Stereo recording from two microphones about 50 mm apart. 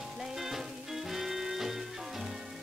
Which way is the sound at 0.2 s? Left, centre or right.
Centre.